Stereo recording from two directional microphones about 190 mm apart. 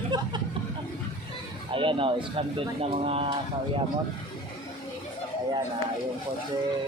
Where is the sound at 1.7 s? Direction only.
25° right (ahead or behind).